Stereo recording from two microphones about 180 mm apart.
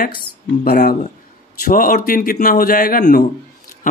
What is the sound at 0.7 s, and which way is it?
A man's voice, 60° left (ahead or behind).